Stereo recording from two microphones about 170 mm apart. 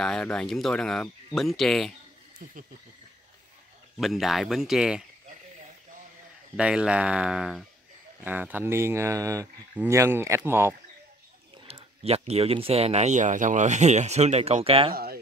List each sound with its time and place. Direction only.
0.0 s speech: 5° left (ahead or behind)
4.0 s speech: centre (ahead or behind)
6.5 s speech: 5° right (ahead or behind)
11.7 s speech: 35° right (ahead or behind)